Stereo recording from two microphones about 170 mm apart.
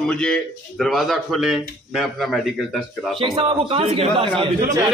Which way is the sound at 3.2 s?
35° right (ahead or behind).